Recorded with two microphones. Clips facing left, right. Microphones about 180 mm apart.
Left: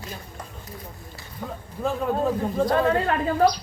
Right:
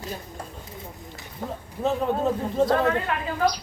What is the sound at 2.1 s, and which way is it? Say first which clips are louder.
Speech: left 1 dB; 25° right (ahead or behind).